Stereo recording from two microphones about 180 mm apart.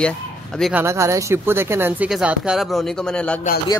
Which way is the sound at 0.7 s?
15° right (ahead or behind).